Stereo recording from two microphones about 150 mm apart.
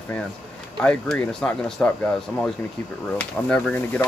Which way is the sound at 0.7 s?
5° left (ahead or behind).